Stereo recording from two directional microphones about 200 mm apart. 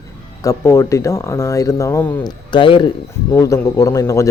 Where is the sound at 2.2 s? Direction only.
25° left (ahead or behind).